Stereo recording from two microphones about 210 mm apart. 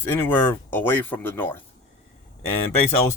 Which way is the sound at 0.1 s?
10° left (ahead or behind).